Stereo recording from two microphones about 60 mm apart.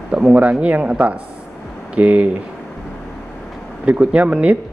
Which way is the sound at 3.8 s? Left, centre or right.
Right.